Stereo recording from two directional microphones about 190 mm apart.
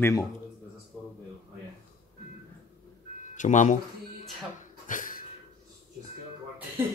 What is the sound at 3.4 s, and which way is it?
Speech, 40° left (ahead or behind).